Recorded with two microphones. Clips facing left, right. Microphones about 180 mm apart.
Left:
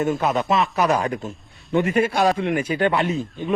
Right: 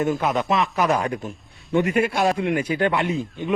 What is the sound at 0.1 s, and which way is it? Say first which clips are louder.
Speech: left 1 dB; 20° left (ahead or behind).